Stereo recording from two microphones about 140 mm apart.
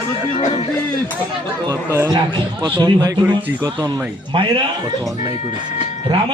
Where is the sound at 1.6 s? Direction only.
25° right (ahead or behind).